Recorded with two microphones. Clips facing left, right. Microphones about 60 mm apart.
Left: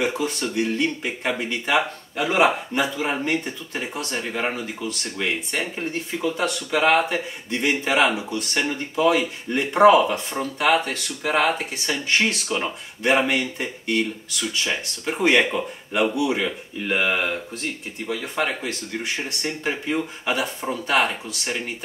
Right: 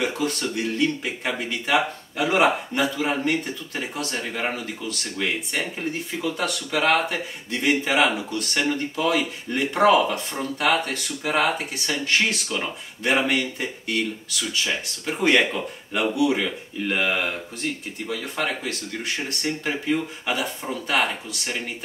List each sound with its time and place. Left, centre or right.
0.0 s speech: centre
5.5 s speech: centre